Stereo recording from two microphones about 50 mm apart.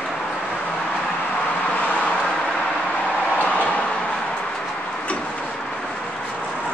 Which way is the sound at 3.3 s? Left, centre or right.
Left.